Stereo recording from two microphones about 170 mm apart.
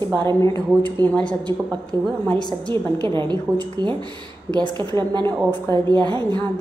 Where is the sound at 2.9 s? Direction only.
25° right (ahead or behind).